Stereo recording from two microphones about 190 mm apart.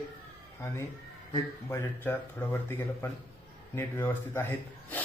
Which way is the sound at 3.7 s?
10° left (ahead or behind).